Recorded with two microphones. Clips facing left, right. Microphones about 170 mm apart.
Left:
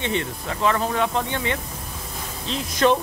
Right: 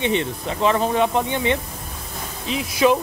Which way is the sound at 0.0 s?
20° right (ahead or behind).